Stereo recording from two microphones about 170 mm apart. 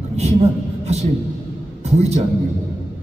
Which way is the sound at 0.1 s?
40° right (ahead or behind).